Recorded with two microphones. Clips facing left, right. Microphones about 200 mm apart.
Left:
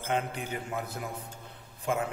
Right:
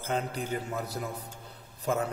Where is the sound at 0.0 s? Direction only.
40° right (ahead or behind).